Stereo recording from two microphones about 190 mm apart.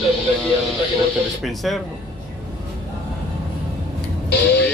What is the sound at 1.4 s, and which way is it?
Speech, centre (ahead or behind).